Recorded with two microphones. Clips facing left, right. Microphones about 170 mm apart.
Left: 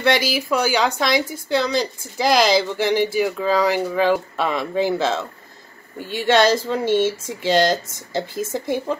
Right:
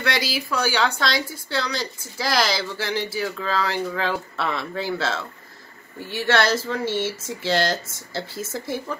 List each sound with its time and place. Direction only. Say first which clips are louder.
0.0 s speech: left 6 dB; 20° left (ahead or behind)